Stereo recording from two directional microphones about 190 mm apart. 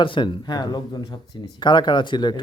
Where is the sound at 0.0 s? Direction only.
25° left (ahead or behind).